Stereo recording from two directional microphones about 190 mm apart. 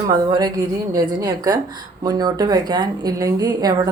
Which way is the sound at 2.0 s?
20° right (ahead or behind).